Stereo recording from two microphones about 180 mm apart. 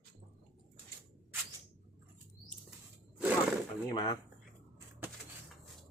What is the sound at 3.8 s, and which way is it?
Speech, 20° left (ahead or behind).